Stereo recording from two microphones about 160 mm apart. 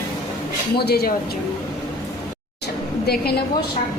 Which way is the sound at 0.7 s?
85° left.